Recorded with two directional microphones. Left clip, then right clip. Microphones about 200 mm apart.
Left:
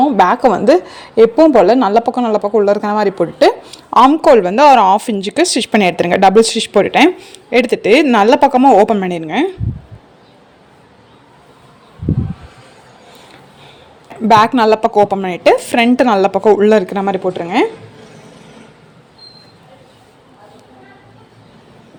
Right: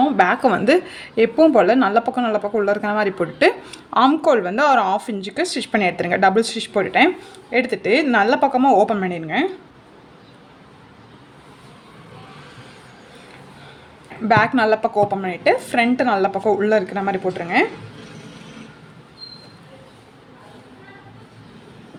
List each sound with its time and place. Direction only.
0.0 s a woman's voice: 20° left (ahead or behind)
14.3 s a woman's voice: 30° left (ahead or behind)